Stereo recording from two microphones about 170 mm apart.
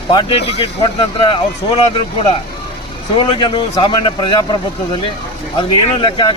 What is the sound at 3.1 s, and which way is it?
Speech, 30° left (ahead or behind).